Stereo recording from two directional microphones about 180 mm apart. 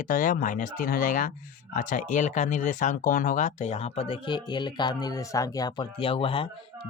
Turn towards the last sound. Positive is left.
turn(degrees=30)  # may be behind; listen again after turning